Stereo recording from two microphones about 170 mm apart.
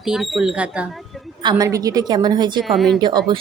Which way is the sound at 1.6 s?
20° right (ahead or behind).